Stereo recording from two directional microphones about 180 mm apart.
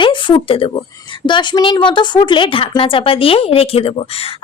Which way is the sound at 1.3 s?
25° left (ahead or behind).